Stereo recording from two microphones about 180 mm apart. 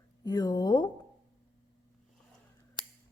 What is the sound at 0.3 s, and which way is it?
Speech, 20° left (ahead or behind).